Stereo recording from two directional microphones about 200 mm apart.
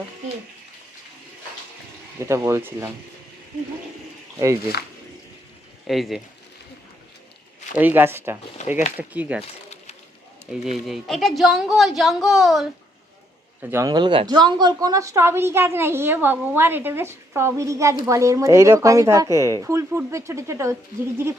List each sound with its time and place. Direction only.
2.2 s a woman's voice: 15° right (ahead or behind)
4.4 s speech: 15° right (ahead or behind)
5.9 s speech: centre (ahead or behind)
7.8 s a woman's voice: 10° right (ahead or behind)
8.6 s a sound: 35° left (ahead or behind)
9.0 s a woman's voice: 5° right (ahead or behind)
10.5 s speech: centre (ahead or behind)
13.6 s a woman's voice: 10° right (ahead or behind)